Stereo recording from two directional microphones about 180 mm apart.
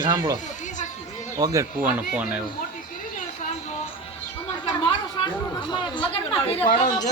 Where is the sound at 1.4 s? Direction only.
15° right (ahead or behind).